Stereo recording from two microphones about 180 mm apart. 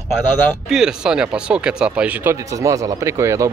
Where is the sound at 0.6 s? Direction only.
5° right (ahead or behind).